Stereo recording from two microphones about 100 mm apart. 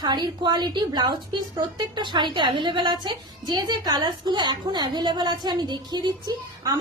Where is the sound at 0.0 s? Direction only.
45° right (ahead or behind).